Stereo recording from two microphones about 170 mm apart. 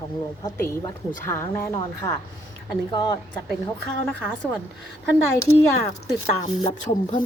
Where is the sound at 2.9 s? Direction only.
25° left (ahead or behind).